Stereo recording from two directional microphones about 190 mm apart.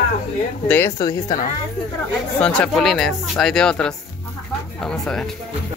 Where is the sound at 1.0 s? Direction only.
20° left (ahead or behind).